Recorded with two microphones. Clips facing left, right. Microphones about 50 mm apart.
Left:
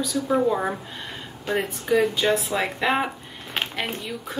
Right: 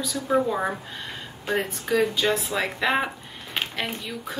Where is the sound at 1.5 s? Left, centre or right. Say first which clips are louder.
Left 2 dB; centre.